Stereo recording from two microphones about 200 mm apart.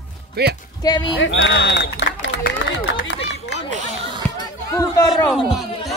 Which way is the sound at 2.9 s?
65° left (ahead or behind).